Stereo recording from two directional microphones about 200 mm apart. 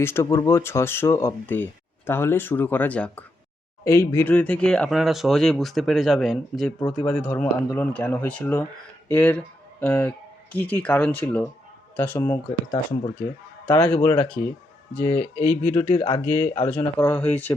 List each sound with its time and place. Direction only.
0.0 s speech: 15° left (ahead or behind)
15.9 s speech: 25° left (ahead or behind); by 17.5 s 10° left (ahead or behind)